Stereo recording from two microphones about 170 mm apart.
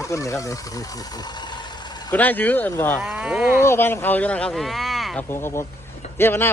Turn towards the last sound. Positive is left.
turn(degrees=15)  # may be behind; listen again after turning